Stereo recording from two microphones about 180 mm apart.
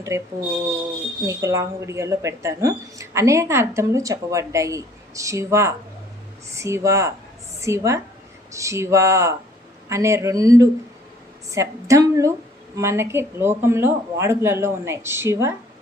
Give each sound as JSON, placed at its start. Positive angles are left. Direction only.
{"t": 0.1, "sound": "a woman's voice", "side_deg": -15}
{"t": 1.3, "sound": "a woman's voice", "side_deg": -15}